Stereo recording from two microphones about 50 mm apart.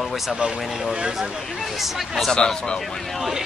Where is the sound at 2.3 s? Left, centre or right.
Centre.